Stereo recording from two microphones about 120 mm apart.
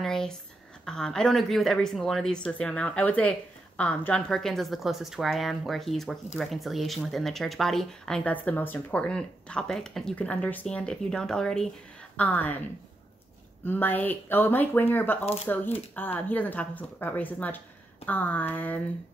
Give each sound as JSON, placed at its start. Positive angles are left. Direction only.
{"t": 0.0, "sound": "a sound", "side_deg": 5}
{"t": 0.8, "sound": "speech", "side_deg": 5}
{"t": 13.7, "sound": "speech", "side_deg": 15}